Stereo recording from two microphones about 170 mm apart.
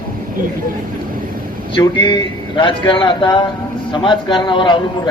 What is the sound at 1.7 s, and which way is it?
Speech, 25° left (ahead or behind).